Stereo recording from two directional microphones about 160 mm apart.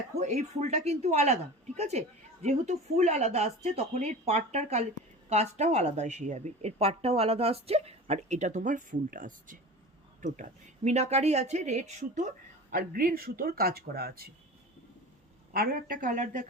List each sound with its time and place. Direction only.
0.2 s speech: 45° right (ahead or behind)
12.7 s speech: 60° right (ahead or behind); by 14.3 s 75° right (ahead or behind)
15.5 s a woman's voice: 65° right (ahead or behind)